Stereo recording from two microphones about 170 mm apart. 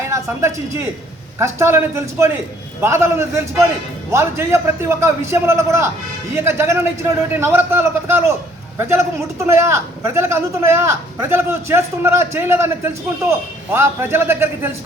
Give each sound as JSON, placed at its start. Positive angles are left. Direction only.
{"t": 0.0, "sound": "a man's voice", "side_deg": -15}